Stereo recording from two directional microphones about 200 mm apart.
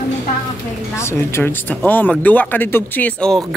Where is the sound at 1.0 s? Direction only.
15° left (ahead or behind).